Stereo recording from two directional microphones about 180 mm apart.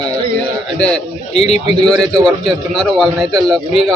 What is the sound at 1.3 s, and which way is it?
Speech, 35° left (ahead or behind).